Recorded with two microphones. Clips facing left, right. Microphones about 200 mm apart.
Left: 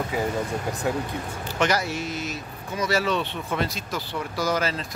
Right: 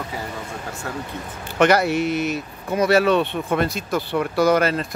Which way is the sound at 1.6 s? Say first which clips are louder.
Right 8 dB; 60° right (ahead or behind).